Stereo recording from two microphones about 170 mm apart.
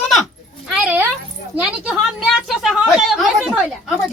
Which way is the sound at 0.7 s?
10° right (ahead or behind).